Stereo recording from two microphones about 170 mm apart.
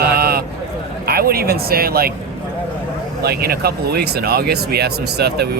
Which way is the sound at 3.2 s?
65° right (ahead or behind).